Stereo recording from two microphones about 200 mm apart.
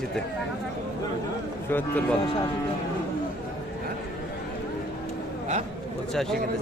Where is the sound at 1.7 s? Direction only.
10° left (ahead or behind).